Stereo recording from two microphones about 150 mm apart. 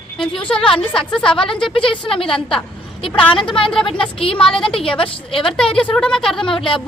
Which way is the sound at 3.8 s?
35° left (ahead or behind).